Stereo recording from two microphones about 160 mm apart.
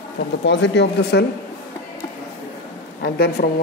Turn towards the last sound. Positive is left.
turn(degrees=85)